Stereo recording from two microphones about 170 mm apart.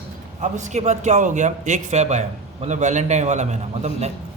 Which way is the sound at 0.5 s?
45° right (ahead or behind).